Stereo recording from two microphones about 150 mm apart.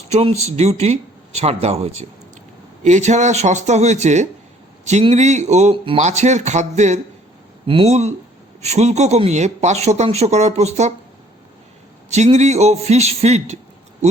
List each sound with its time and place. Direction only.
0.1 s speech: 45° right (ahead or behind)
5.7 s speech: 35° right (ahead or behind)
6.0 s speech: 50° right (ahead or behind)
12.1 s speech: 50° right (ahead or behind)